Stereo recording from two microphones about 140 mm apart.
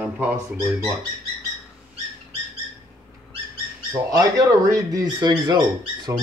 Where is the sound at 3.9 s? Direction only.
25° right (ahead or behind).